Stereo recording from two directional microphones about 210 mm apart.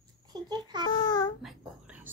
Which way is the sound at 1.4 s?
5° right (ahead or behind).